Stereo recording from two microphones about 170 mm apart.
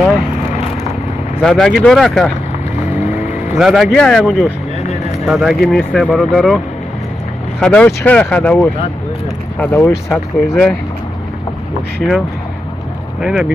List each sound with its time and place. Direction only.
1.4 s speech: centre (ahead or behind)
3.5 s speech: centre (ahead or behind)
7.6 s speech: 10° left (ahead or behind)
13.2 s speech: 5° right (ahead or behind)